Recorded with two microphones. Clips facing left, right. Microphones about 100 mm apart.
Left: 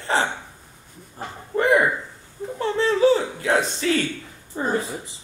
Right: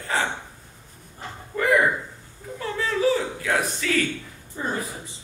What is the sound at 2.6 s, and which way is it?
Speech, 30° left (ahead or behind).